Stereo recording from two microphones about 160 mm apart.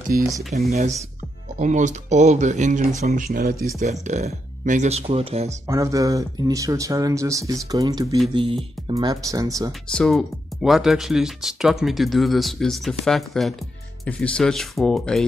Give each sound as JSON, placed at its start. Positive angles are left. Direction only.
{"t": 0.1, "sound": "speech", "side_deg": -60}
{"t": 3.1, "sound": "speech", "side_deg": -65}
{"t": 3.8, "sound": "speech", "side_deg": -45}
{"t": 5.5, "sound": "speech", "side_deg": -20}
{"t": 8.4, "sound": "speech", "side_deg": -35}
{"t": 8.9, "sound": "speech", "side_deg": -20}
{"t": 9.7, "sound": "speech", "side_deg": 5}